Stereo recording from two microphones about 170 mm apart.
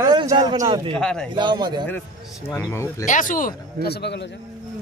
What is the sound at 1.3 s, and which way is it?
Speech, 25° right (ahead or behind).